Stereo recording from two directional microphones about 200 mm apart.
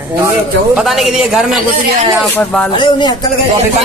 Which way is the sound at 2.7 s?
25° left (ahead or behind).